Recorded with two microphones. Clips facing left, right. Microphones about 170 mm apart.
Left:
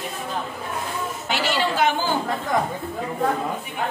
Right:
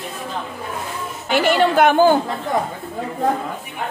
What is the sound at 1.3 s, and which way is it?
Speech, 55° right (ahead or behind).